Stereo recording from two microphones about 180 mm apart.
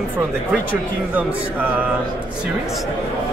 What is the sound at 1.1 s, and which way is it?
Speech, 10° right (ahead or behind).